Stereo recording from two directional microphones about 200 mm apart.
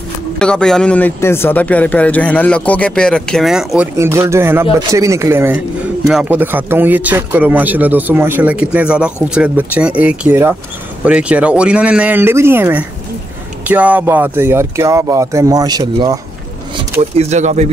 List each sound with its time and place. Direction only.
0.4 s speech: 5° left (ahead or behind); by 16.2 s 20° right (ahead or behind)
17.0 s speech: 35° right (ahead or behind)